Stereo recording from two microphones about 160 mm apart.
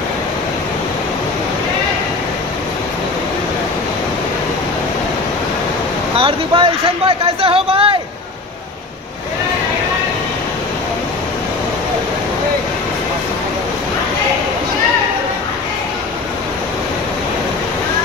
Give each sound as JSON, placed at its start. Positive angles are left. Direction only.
{"t": 6.1, "sound": "speech", "side_deg": -35}